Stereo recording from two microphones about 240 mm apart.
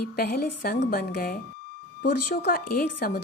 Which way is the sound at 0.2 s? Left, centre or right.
Left.